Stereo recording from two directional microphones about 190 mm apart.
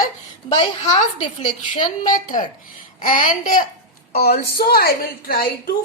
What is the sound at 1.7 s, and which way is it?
A woman's voice, 45° left (ahead or behind).